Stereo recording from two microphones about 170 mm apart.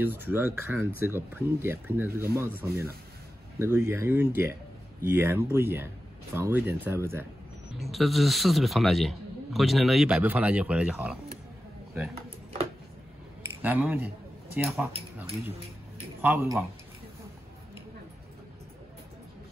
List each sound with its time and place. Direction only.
0.0 s speech: 10° right (ahead or behind)
7.8 s a man's voice: centre (ahead or behind)
13.4 s a sound: 10° right (ahead or behind)
16.2 s speech: 15° right (ahead or behind)